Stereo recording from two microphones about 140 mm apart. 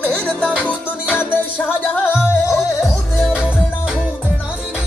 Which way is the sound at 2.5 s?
Centre (ahead or behind).